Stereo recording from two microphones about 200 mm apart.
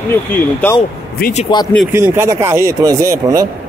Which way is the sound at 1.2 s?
40° left (ahead or behind).